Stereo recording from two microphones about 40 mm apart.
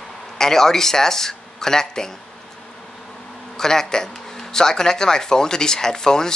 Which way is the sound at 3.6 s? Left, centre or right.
Centre.